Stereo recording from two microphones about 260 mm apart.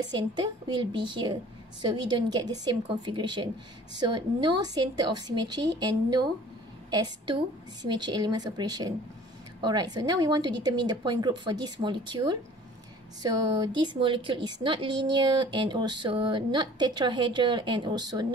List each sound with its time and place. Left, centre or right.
0.0 s a woman's voice: centre